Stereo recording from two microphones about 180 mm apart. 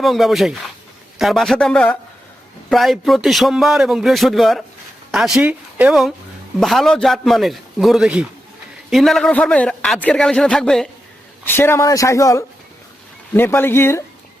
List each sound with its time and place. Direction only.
0.0 s a man's voice: centre (ahead or behind)